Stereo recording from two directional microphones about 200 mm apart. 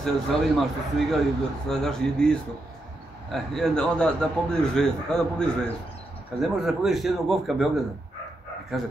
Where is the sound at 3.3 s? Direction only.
Centre (ahead or behind).